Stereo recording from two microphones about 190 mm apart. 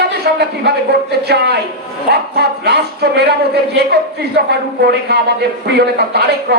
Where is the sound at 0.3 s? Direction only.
55° right (ahead or behind).